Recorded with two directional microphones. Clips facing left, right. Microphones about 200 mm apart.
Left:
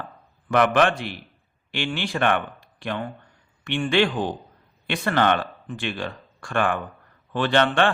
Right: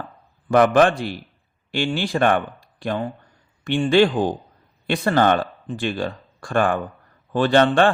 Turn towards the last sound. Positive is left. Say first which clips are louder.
# right 4 dB
turn(degrees=-40)  # may be behind; listen again after turning